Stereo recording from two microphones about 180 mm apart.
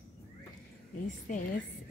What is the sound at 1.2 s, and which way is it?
Speech, 45° left (ahead or behind).